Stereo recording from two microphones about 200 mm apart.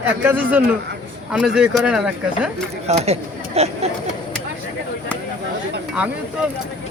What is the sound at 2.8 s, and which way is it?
Speech, 30° right (ahead or behind).